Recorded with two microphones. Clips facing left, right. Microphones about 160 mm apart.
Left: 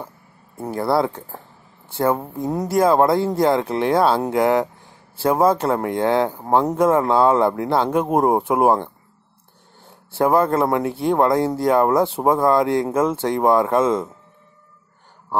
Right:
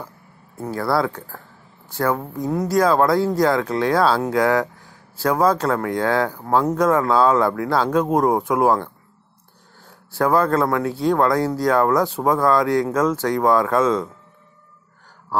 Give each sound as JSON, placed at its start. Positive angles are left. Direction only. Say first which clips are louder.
{"t": 0.6, "sound": "speech", "louder": "left 1 dB", "side_deg": 20}